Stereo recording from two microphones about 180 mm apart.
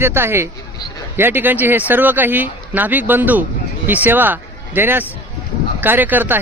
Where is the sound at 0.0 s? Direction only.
15° right (ahead or behind).